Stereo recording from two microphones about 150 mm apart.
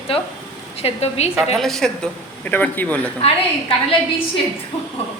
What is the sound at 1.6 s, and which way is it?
Speech, centre (ahead or behind).